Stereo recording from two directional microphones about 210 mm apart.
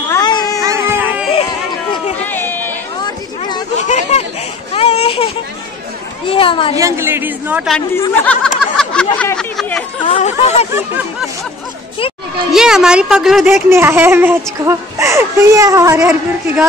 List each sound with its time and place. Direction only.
0.1 s music: 15° left (ahead or behind)
0.6 s baby cry: 15° right (ahead or behind)
2.2 s chatter: 10° left (ahead or behind)
3.0 s a sound: 20° left (ahead or behind)
3.8 s a sound: 35° left (ahead or behind)
4.7 s baby cry: 30° left (ahead or behind)
6.2 s speech: 25° left (ahead or behind)
6.7 s speech: 15° right (ahead or behind)
7.7 s snicker: 10° left (ahead or behind)
10.0 s speech: 30° left (ahead or behind)
12.5 s speech: centre (ahead or behind)